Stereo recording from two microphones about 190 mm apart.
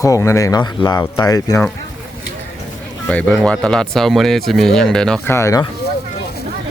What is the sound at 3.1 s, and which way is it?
Speech, 5° left (ahead or behind).